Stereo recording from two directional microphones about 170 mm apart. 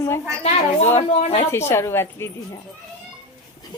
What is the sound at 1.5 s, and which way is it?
Speech, 15° left (ahead or behind).